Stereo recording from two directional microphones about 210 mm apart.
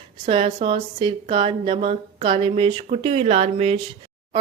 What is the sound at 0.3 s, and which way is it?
Speech, 25° right (ahead or behind).